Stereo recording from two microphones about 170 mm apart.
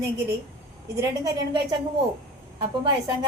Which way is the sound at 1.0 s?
20° right (ahead or behind).